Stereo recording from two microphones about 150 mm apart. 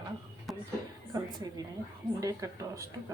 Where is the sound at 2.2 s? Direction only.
20° right (ahead or behind).